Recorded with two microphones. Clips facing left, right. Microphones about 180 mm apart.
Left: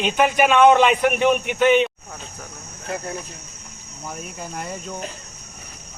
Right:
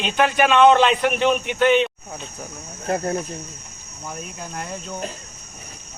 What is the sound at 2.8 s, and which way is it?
Speech, 45° right (ahead or behind).